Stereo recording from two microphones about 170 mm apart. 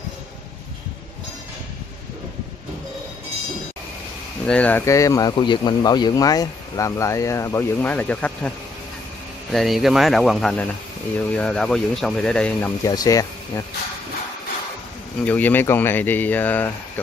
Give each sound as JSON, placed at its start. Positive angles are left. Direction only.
{"t": 4.5, "sound": "speech", "side_deg": 10}
{"t": 15.2, "sound": "speech", "side_deg": 10}